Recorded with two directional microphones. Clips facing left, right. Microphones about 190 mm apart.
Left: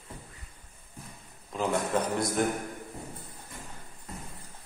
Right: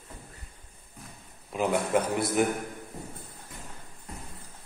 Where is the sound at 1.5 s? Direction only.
10° right (ahead or behind).